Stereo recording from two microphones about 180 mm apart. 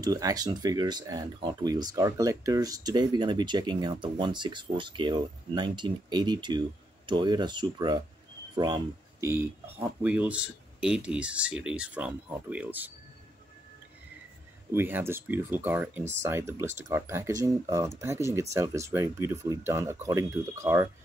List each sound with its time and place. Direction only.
0.0 s speech: 20° right (ahead or behind)
14.7 s speech: 10° right (ahead or behind)